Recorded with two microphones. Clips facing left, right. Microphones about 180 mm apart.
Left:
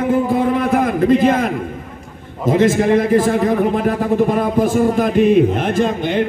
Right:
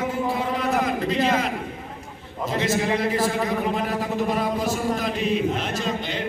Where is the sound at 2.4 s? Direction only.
50° left (ahead or behind).